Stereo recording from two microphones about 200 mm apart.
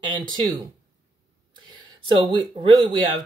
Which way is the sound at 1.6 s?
25° right (ahead or behind).